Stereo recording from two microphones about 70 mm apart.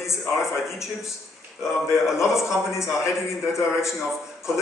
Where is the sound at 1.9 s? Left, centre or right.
Left.